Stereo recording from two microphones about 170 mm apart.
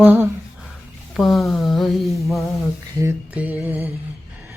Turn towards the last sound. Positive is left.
turn(degrees=-10)  # may be behind; listen again after turning